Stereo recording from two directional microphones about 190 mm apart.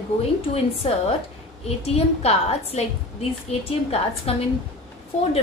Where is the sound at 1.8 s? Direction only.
30° left (ahead or behind).